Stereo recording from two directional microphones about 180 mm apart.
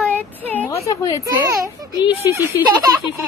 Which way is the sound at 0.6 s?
15° left (ahead or behind).